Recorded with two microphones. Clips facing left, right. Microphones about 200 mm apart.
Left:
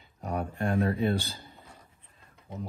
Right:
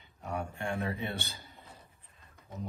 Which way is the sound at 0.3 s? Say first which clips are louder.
Left 6 dB; 35° left (ahead or behind).